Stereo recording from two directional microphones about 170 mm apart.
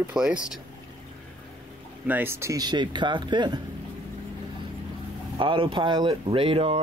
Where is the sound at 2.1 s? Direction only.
15° right (ahead or behind).